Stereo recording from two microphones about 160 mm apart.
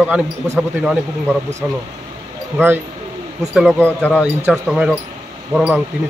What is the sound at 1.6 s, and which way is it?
Speech, 10° right (ahead or behind).